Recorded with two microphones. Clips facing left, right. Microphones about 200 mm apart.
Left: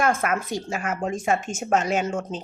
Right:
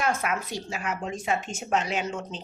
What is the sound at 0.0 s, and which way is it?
Speech, 50° left (ahead or behind).